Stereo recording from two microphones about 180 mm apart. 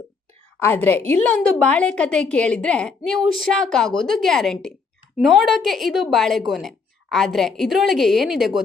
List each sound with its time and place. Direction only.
0.6 s a woman's voice: 10° left (ahead or behind)